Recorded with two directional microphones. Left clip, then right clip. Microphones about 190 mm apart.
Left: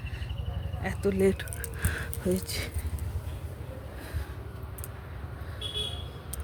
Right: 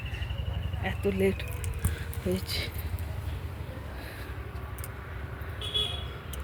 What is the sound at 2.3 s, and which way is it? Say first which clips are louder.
Speech: right 1 dB; 20° left (ahead or behind).